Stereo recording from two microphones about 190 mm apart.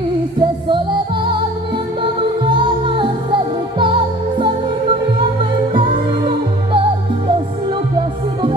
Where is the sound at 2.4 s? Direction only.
25° right (ahead or behind).